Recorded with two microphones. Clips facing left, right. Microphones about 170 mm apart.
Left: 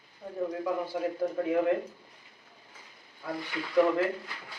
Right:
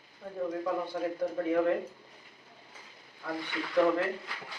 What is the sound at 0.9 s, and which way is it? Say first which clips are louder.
Speech: left 2 dB; 15° left (ahead or behind).